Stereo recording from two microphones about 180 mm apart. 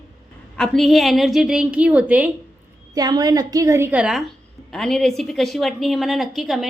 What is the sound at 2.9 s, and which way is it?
A woman's voice, 20° right (ahead or behind).